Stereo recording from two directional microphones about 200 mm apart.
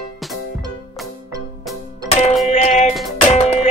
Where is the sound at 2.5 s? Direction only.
35° left (ahead or behind).